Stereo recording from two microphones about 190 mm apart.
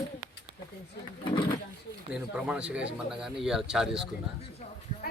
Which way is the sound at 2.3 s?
5° right (ahead or behind).